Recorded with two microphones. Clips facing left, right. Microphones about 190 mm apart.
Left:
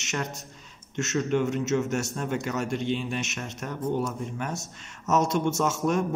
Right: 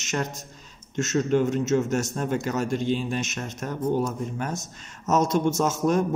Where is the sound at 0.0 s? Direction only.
35° right (ahead or behind).